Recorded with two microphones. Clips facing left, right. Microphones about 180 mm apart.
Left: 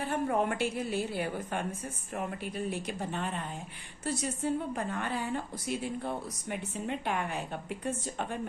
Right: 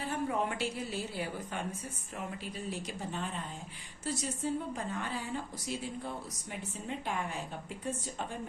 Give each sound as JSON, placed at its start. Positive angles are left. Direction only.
{"t": 0.1, "sound": "a woman's voice", "side_deg": 55}